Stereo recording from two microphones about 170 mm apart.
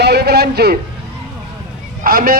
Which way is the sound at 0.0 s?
70° right (ahead or behind).